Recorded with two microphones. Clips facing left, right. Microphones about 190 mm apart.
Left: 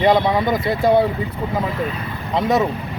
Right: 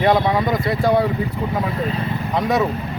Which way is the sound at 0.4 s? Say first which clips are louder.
Left 1 dB; centre (ahead or behind).